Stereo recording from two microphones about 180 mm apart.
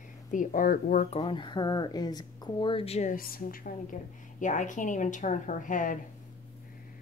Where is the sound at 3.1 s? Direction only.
55° left (ahead or behind).